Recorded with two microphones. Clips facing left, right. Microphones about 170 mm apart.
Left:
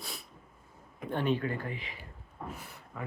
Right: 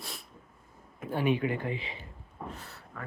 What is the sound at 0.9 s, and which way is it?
Speech, 5° right (ahead or behind).